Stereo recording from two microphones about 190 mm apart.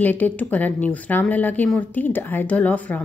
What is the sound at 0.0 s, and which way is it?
Speech, 10° left (ahead or behind).